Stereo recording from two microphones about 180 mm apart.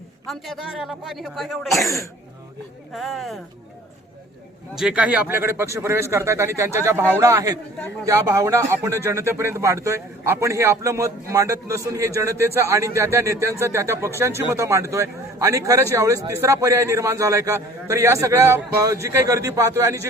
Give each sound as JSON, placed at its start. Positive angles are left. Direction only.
{"t": 0.3, "sound": "speech", "side_deg": 0}
{"t": 2.9, "sound": "speech", "side_deg": 0}
{"t": 4.7, "sound": "a man's voice", "side_deg": -5}